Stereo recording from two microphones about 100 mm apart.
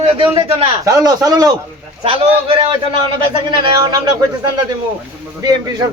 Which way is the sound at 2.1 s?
60° right (ahead or behind).